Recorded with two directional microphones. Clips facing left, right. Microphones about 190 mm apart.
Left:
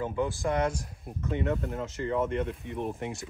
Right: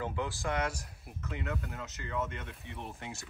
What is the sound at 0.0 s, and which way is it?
Speech, 25° left (ahead or behind).